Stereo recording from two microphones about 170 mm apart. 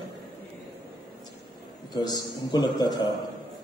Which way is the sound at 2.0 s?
25° left (ahead or behind).